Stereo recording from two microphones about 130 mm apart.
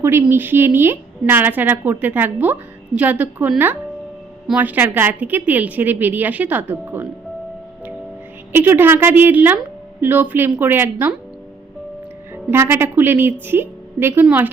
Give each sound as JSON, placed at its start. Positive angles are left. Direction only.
{"t": 0.0, "sound": "a woman's voice", "side_deg": -15}
{"t": 8.5, "sound": "a woman's voice", "side_deg": -15}
{"t": 12.3, "sound": "a woman's voice", "side_deg": -20}